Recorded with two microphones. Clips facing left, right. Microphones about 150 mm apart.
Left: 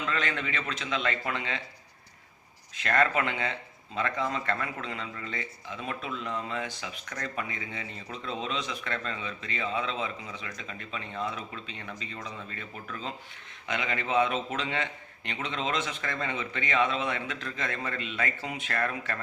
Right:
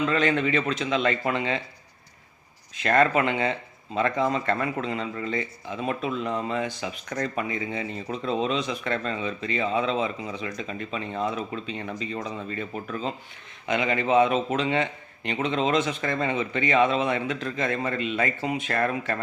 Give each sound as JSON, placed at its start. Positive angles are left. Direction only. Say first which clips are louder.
{"t": 0.0, "sound": "speech", "louder": "right 9 dB", "side_deg": -20}
{"t": 2.8, "sound": "a man's voice", "louder": "right 5 dB", "side_deg": -25}
{"t": 18.7, "sound": "speech", "louder": "right 4 dB", "side_deg": -30}